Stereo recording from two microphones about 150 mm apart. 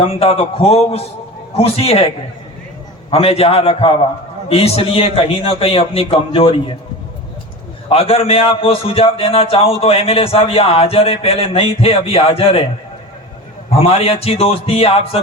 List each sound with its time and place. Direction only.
0.0 s a man's voice: 40° left (ahead or behind)
3.1 s a man's voice: 40° left (ahead or behind)
7.9 s a man's voice: 40° left (ahead or behind)
13.7 s a man's voice: 40° left (ahead or behind)